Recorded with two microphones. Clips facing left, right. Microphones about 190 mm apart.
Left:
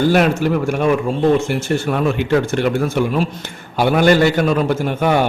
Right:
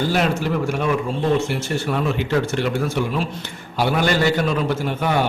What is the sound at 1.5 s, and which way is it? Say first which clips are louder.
A man's voice: left 4 dB; 50° left (ahead or behind).